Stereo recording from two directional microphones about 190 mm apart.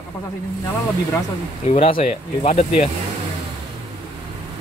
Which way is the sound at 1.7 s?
30° left (ahead or behind).